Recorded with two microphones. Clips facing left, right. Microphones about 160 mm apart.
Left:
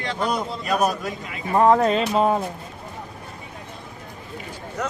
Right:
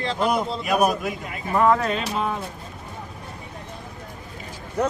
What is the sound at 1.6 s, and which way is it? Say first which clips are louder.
Speech: left 3 dB; 35° left (ahead or behind).